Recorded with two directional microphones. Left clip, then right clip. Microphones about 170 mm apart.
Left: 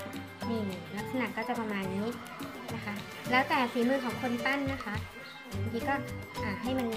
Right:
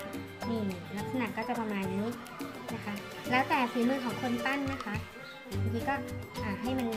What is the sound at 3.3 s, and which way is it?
Speech, centre (ahead or behind).